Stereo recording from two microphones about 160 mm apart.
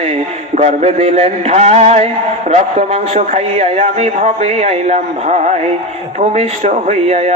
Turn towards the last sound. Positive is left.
turn(degrees=-45)  # may be behind; listen again after turning